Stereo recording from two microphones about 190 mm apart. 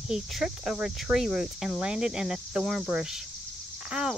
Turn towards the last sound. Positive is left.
turn(degrees=-5)  # may be behind; listen again after turning